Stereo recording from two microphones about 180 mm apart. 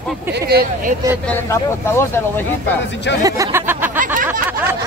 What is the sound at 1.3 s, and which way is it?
Speech, 15° left (ahead or behind).